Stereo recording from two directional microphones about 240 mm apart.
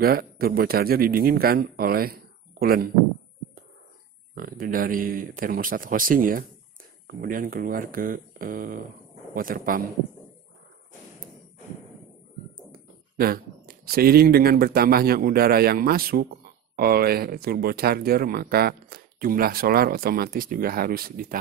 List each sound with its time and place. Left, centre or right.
0.0 s speech: right
4.4 s speech: right
12.7 s speech: right